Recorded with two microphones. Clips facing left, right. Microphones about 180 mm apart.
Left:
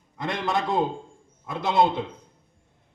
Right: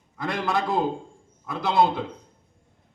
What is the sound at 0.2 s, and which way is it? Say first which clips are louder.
Speech: right 1 dB; 20° left (ahead or behind).